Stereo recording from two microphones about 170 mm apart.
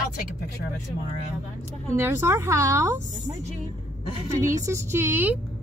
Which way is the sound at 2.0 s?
15° right (ahead or behind).